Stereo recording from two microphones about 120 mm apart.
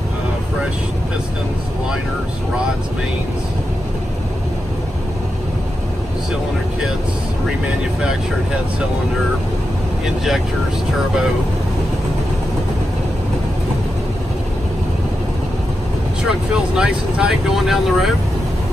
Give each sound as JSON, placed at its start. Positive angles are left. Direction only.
{"t": 10.0, "sound": "speech", "side_deg": 0}
{"t": 16.3, "sound": "speech", "side_deg": -5}